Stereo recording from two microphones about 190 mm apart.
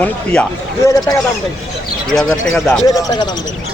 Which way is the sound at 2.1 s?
5° left (ahead or behind).